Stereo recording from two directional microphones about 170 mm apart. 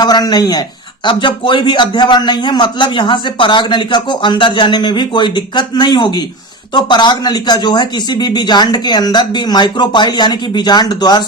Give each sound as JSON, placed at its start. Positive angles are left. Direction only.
{"t": 0.0, "sound": "a man's voice", "side_deg": 25}